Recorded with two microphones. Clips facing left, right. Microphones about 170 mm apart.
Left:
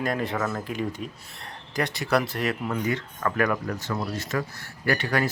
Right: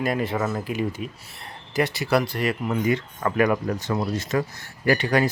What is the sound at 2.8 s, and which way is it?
Speech, 15° right (ahead or behind).